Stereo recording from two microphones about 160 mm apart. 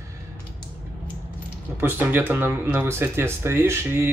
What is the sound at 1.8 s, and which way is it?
Speech, 15° right (ahead or behind).